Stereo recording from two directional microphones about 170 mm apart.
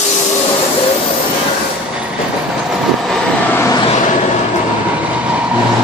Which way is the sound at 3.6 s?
20° left (ahead or behind).